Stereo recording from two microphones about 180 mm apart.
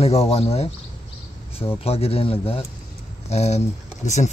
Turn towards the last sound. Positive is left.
turn(degrees=40)  # may be behind; listen again after turning